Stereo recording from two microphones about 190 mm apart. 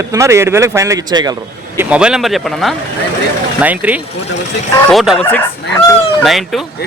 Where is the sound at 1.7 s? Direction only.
5° right (ahead or behind).